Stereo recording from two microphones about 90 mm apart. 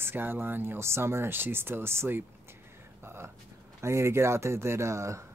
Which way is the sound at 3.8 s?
30° right (ahead or behind).